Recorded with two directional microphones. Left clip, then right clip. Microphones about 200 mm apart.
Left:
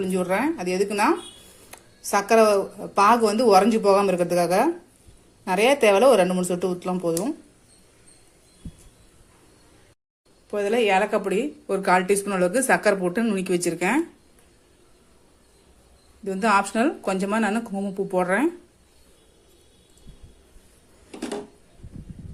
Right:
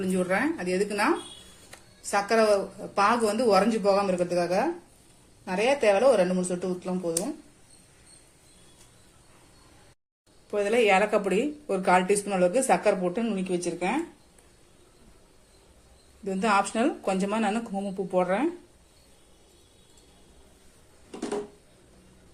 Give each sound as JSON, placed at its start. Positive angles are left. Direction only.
{"t": 0.0, "sound": "speech", "side_deg": 20}
{"t": 10.5, "sound": "speech", "side_deg": 15}
{"t": 16.2, "sound": "speech", "side_deg": 15}